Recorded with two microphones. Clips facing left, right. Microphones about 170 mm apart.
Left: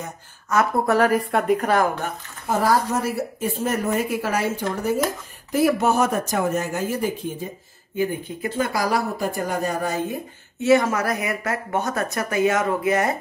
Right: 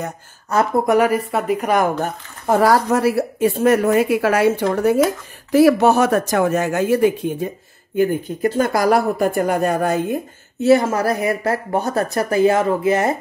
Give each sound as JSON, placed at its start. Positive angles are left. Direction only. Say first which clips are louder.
{"t": 0.5, "sound": "speech", "louder": "right 3 dB", "side_deg": -35}
{"t": 0.8, "sound": "speech", "louder": "right 3 dB", "side_deg": -10}
{"t": 2.4, "sound": "a woman's voice", "louder": "right 5 dB", "side_deg": -70}
{"t": 5.5, "sound": "speech", "louder": "right 7 dB", "side_deg": -85}
{"t": 7.9, "sound": "speech", "louder": "right 6 dB", "side_deg": -50}
{"t": 10.6, "sound": "speech", "louder": "right 4 dB", "side_deg": -35}